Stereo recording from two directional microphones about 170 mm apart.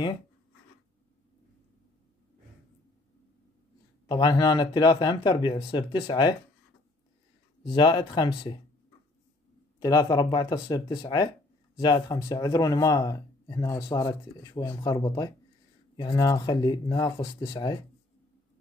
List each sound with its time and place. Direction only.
4.1 s speech: 25° left (ahead or behind)
7.6 s speech: 25° left (ahead or behind)
9.8 s speech: 20° left (ahead or behind)